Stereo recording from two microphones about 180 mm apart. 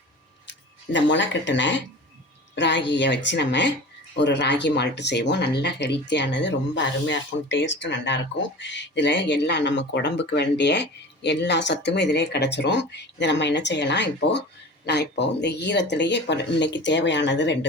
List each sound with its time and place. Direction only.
0.9 s speech: 85° left